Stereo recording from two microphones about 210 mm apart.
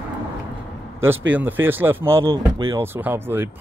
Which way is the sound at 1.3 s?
10° right (ahead or behind).